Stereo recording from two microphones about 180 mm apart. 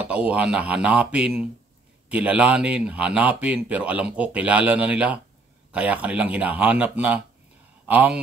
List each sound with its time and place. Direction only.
0.0 s speech: 5° right (ahead or behind)